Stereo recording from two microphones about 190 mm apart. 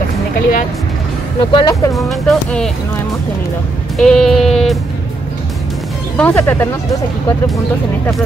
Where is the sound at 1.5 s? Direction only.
20° left (ahead or behind).